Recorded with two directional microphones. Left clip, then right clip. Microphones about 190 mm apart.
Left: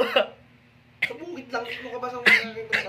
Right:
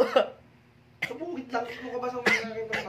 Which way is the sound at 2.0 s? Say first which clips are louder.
Left 7 dB; 15° right (ahead or behind).